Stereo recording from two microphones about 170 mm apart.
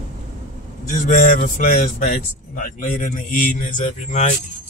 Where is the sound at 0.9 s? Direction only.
50° left (ahead or behind).